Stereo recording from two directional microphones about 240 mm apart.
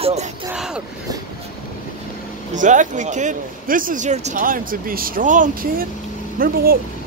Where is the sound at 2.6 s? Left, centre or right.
Right.